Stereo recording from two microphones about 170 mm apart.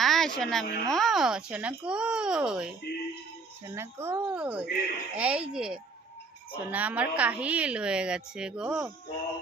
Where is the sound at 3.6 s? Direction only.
15° right (ahead or behind).